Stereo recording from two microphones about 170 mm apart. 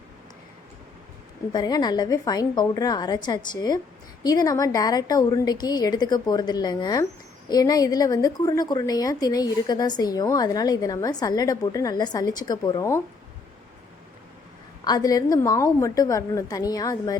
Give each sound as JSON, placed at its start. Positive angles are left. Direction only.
{"t": 1.5, "sound": "a woman's voice", "side_deg": 25}
{"t": 14.8, "sound": "a woman's voice", "side_deg": 25}